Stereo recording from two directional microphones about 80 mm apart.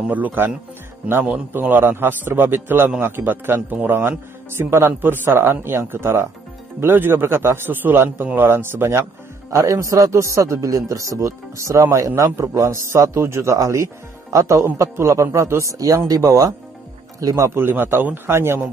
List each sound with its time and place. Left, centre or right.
0.1 s a man's voice: right
1.5 s a man's voice: right
9.5 s a man's voice: right
17.6 s a man's voice: right